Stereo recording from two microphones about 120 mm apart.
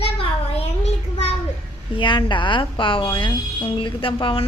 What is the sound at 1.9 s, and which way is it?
A woman's voice, 40° left (ahead or behind).